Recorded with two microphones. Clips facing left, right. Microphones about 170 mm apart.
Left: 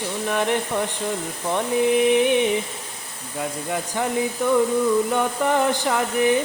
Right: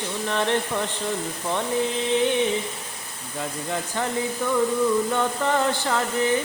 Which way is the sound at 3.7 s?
10° left (ahead or behind).